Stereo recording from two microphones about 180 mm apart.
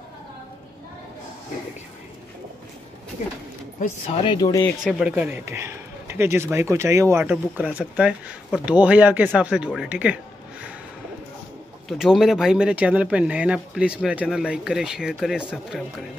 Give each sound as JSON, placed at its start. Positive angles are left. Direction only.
{"t": 3.2, "sound": "speech", "side_deg": 40}
{"t": 4.1, "sound": "speech", "side_deg": 30}
{"t": 4.8, "sound": "a man's voice", "side_deg": -5}
{"t": 12.0, "sound": "speech", "side_deg": 0}